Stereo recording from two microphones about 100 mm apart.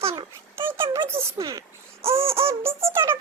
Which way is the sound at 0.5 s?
25° right (ahead or behind).